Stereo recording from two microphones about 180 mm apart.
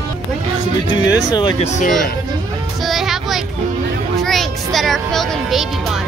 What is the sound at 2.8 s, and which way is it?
Child singing, centre (ahead or behind).